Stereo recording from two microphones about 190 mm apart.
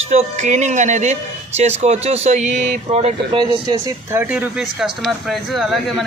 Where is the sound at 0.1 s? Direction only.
40° right (ahead or behind).